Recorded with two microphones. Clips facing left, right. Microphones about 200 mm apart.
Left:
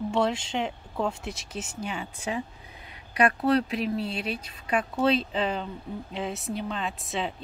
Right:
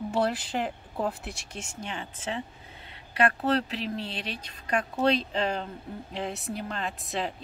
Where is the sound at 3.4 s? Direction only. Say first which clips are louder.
Left 3 dB; 35° right (ahead or behind).